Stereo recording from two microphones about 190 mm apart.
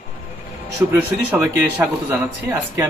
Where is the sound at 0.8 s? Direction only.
10° right (ahead or behind).